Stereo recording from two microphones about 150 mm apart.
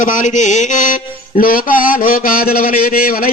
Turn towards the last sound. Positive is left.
turn(degrees=80)